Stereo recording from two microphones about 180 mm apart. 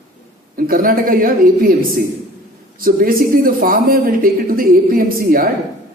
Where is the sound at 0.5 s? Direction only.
50° right (ahead or behind).